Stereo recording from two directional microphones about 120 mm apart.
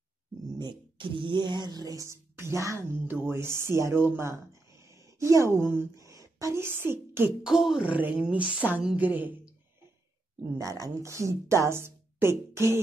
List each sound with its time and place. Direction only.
0.6 s a woman's voice: 40° right (ahead or behind); by 7.3 s 20° right (ahead or behind)
7.4 s a woman's voice: 5° right (ahead or behind)
10.6 s speech: 30° right (ahead or behind)